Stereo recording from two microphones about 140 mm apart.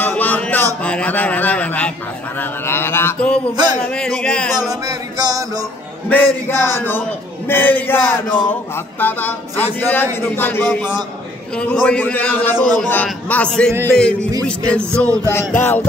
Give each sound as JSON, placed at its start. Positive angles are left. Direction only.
{"t": 0.0, "sound": "music", "side_deg": 10}
{"t": 0.8, "sound": "a sound", "side_deg": 10}
{"t": 2.6, "sound": "mantra", "side_deg": 15}
{"t": 3.8, "sound": "speech", "side_deg": 5}
{"t": 4.6, "sound": "music", "side_deg": -25}
{"t": 6.0, "sound": "a man's voice", "side_deg": 15}